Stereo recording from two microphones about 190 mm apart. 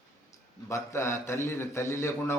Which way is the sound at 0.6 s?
15° left (ahead or behind).